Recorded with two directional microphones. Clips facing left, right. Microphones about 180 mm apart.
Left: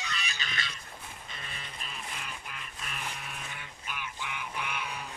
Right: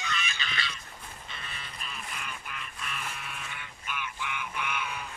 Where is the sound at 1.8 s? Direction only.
35° left (ahead or behind).